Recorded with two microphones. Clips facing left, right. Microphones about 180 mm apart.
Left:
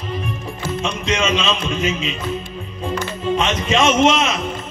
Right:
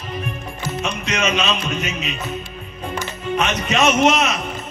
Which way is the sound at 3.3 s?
25° left (ahead or behind).